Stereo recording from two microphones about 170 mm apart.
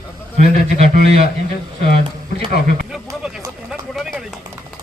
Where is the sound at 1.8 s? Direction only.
60° left (ahead or behind).